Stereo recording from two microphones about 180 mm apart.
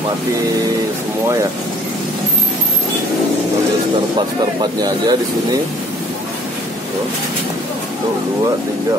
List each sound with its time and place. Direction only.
4.8 s speech: 20° right (ahead or behind)